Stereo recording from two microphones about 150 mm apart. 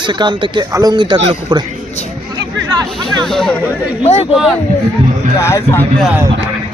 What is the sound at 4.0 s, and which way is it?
Speech, 45° left (ahead or behind).